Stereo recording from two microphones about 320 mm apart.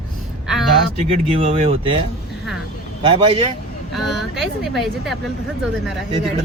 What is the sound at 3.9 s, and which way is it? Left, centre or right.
A woman's voice, centre.